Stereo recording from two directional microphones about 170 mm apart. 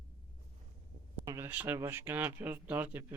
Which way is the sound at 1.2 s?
15° right (ahead or behind).